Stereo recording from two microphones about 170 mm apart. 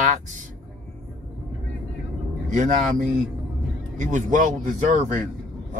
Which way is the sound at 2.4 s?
50° right (ahead or behind).